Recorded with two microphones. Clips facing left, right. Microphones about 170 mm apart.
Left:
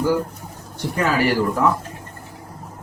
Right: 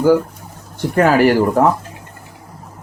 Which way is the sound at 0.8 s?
55° right (ahead or behind).